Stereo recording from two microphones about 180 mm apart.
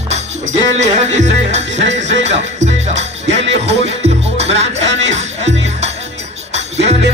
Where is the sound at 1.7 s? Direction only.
90° right.